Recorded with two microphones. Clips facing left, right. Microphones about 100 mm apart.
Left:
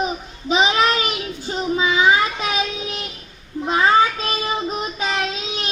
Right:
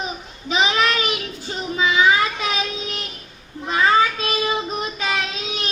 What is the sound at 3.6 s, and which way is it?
Child singing, 25° left (ahead or behind).